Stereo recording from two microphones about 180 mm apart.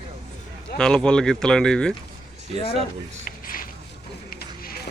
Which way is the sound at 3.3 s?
50° left (ahead or behind).